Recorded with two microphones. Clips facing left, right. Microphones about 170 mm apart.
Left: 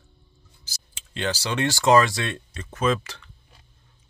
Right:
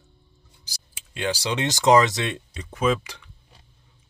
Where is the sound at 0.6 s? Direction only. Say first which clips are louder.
Even; 10° right (ahead or behind).